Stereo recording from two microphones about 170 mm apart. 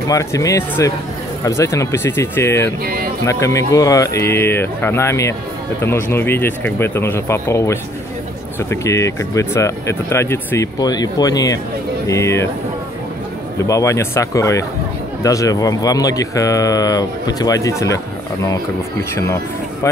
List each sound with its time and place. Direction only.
0.1 s speech: 20° left (ahead or behind)
2.8 s speech: 65° right (ahead or behind)
3.3 s speech: 15° left (ahead or behind)
13.6 s speech: 20° left (ahead or behind)